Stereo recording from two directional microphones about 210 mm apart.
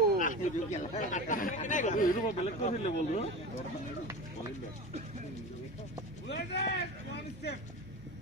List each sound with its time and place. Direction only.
0.2 s speech: 35° left (ahead or behind)
6.2 s speech: 55° left (ahead or behind)